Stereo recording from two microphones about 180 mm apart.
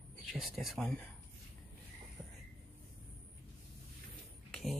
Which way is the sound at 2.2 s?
5° left (ahead or behind).